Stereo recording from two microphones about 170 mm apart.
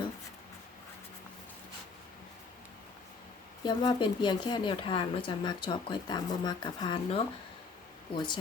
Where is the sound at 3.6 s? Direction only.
25° left (ahead or behind).